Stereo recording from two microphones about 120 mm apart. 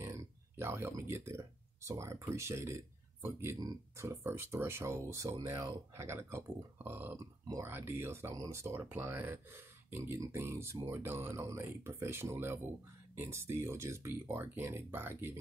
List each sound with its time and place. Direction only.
0.0 s speech: 25° right (ahead or behind)